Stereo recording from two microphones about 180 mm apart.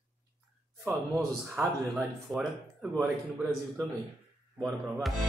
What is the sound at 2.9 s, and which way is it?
Speech, centre (ahead or behind).